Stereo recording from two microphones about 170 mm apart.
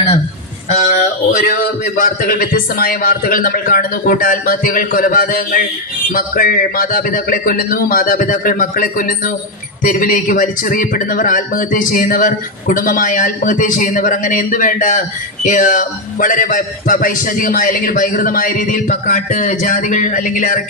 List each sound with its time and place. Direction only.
1.3 s a man's voice: 55° left (ahead or behind)